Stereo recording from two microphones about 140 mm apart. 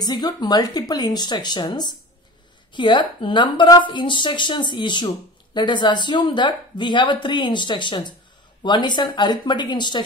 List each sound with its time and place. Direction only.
0.0 s a woman's voice: 30° left (ahead or behind)